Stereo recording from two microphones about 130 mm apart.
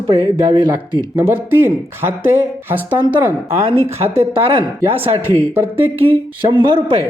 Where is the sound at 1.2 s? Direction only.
15° right (ahead or behind).